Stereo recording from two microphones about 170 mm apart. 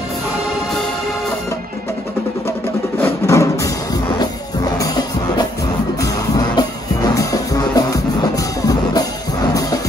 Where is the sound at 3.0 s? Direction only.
15° left (ahead or behind).